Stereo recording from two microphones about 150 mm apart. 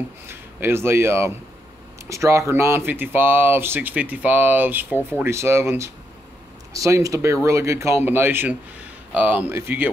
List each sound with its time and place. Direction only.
0.3 s speech: 15° right (ahead or behind)